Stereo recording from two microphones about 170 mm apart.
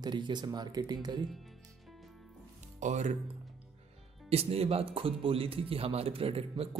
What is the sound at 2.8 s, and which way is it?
Speech, 45° right (ahead or behind).